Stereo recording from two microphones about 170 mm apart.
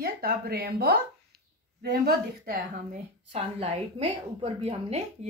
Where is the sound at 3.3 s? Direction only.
40° right (ahead or behind).